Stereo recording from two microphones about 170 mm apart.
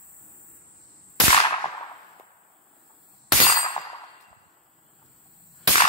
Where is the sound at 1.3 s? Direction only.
25° left (ahead or behind).